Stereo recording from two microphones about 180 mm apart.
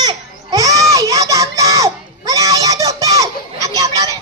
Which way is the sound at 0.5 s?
20° right (ahead or behind).